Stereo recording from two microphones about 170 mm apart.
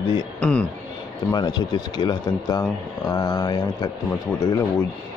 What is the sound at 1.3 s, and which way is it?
Speech, 25° left (ahead or behind).